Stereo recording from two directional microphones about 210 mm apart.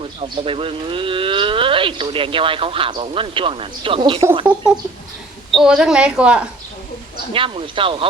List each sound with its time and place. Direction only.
0.0 s speech: 25° right (ahead or behind)
4.4 s a woman's voice: 5° right (ahead or behind)
7.3 s speech: 25° right (ahead or behind)